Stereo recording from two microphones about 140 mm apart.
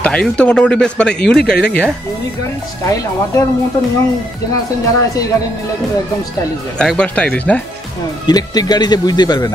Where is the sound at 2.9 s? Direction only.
25° left (ahead or behind).